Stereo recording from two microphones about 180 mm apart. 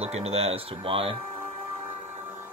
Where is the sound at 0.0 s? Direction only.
35° right (ahead or behind).